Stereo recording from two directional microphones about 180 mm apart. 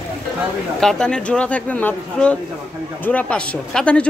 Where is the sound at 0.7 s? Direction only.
5° left (ahead or behind).